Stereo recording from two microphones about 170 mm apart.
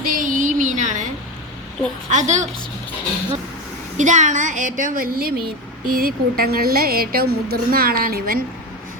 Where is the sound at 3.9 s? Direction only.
45° right (ahead or behind).